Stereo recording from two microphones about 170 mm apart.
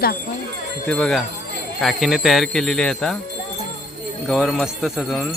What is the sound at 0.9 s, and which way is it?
Speech, 5° left (ahead or behind).